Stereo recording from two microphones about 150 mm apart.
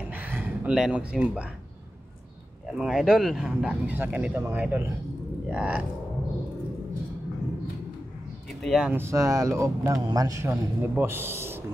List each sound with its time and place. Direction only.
0.1 s a sound: 10° right (ahead or behind)
2.8 s a man's voice: 5° right (ahead or behind)
8.6 s speech: centre (ahead or behind)
8.9 s a man's voice: 20° right (ahead or behind)